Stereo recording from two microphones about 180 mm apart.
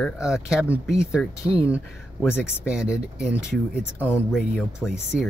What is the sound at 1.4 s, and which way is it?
Speech, 35° right (ahead or behind).